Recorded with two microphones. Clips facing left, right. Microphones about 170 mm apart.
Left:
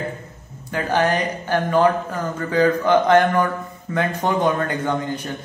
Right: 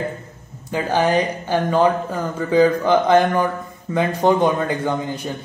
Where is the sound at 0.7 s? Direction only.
15° right (ahead or behind).